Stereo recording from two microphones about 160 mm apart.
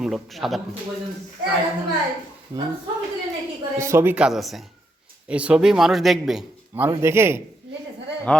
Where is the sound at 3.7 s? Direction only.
15° right (ahead or behind).